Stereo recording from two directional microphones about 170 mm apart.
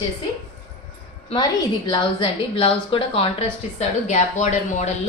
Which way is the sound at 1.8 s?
30° left (ahead or behind).